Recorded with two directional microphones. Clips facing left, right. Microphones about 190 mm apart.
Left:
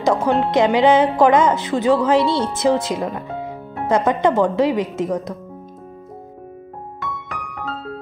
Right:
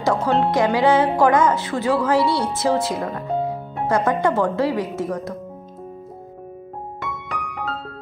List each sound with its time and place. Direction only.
0.0 s a woman's voice: 15° left (ahead or behind)
7.0 s music: centre (ahead or behind)